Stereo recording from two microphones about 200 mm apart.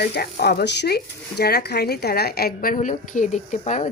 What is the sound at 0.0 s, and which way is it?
Speech, 55° left (ahead or behind).